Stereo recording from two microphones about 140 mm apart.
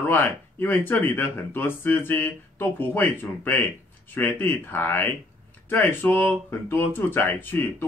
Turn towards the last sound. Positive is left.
turn(degrees=15)  # may be behind; listen again after turning